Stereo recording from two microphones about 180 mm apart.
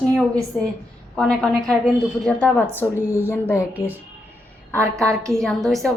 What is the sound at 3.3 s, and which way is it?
Music, 15° left (ahead or behind).